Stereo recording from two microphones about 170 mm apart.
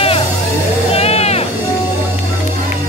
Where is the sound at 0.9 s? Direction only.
35° left (ahead or behind).